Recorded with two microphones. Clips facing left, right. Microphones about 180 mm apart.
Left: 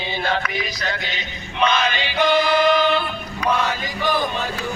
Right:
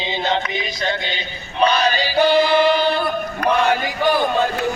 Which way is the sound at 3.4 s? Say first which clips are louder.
Right 4 dB; 60° right (ahead or behind).